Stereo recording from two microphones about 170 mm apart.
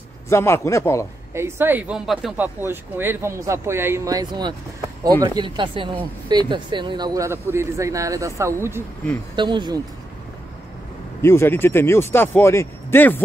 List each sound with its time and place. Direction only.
0.3 s speech: 15° left (ahead or behind)
1.3 s speech: 15° right (ahead or behind)
9.3 s speech: 25° right (ahead or behind)
11.1 s speech: 15° left (ahead or behind)